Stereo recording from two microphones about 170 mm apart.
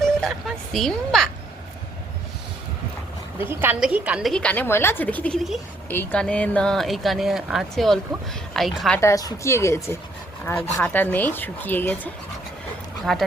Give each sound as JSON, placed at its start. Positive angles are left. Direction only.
{"t": 0.0, "sound": "a woman's voice", "side_deg": 0}
{"t": 3.3, "sound": "a woman's voice", "side_deg": -15}
{"t": 9.0, "sound": "speech", "side_deg": 20}
{"t": 13.1, "sound": "a woman's voice", "side_deg": 0}